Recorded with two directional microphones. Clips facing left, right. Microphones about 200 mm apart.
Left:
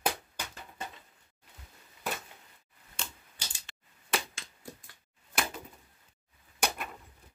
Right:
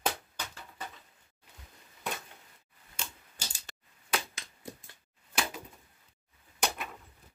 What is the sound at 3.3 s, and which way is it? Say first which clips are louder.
Tick-tock: right 2 dB; 40° right (ahead or behind).